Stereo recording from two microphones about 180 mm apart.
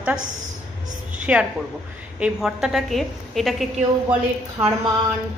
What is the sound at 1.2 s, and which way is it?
A woman's voice, 5° right (ahead or behind).